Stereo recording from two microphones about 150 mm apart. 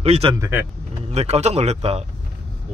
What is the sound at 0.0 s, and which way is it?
Speech, 45° right (ahead or behind).